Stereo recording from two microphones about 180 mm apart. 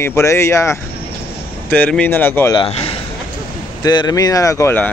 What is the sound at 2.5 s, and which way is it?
A man's voice, 30° left (ahead or behind).